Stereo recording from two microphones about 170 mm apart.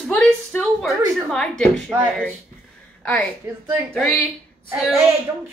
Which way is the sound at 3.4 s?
20° right (ahead or behind).